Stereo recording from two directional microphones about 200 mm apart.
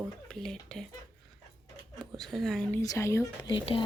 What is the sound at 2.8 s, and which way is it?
Speech, 15° left (ahead or behind).